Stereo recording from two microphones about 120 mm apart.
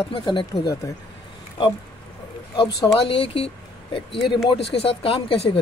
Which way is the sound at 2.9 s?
50° left (ahead or behind).